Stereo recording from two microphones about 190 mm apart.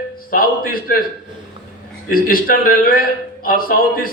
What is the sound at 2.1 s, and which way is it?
A man's voice, 50° left (ahead or behind).